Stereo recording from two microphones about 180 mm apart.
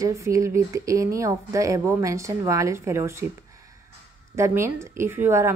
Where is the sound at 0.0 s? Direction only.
15° right (ahead or behind).